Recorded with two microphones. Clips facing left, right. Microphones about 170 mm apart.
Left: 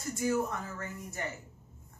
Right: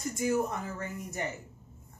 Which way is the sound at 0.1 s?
20° right (ahead or behind).